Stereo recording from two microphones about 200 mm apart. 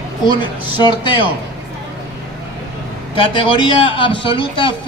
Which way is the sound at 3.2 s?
25° left (ahead or behind).